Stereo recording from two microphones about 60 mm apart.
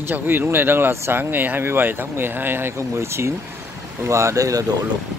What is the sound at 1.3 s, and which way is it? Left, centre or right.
Speech, right.